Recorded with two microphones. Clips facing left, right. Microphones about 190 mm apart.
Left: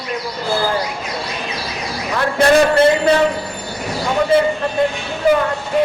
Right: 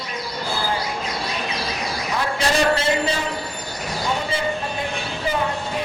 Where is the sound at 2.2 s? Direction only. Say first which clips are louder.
Left 9 dB; 60° left (ahead or behind).